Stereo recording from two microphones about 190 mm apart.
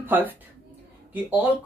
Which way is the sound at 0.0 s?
10° right (ahead or behind).